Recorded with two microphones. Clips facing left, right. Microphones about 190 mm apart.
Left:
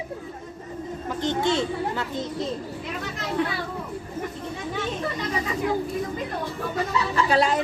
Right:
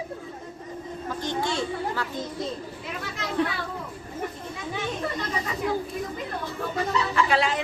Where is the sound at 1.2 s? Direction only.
20° left (ahead or behind).